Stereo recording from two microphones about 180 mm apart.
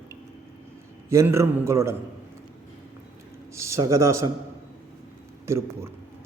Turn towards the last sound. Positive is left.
turn(degrees=-15)  # may be behind; listen again after turning